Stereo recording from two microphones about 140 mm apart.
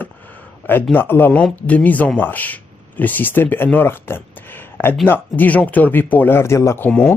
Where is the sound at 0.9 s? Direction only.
15° left (ahead or behind).